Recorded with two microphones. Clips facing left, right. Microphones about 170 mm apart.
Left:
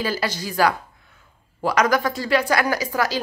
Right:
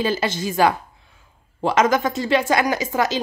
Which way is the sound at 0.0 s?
25° right (ahead or behind).